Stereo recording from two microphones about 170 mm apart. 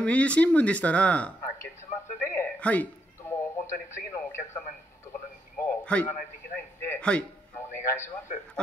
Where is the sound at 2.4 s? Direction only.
10° left (ahead or behind).